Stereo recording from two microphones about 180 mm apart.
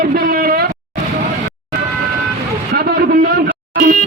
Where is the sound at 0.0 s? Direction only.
55° right (ahead or behind).